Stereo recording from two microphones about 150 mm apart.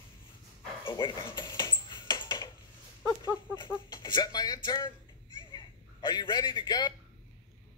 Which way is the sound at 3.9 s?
30° left (ahead or behind).